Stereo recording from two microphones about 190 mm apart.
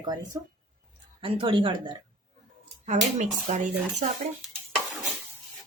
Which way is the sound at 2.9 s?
35° right (ahead or behind).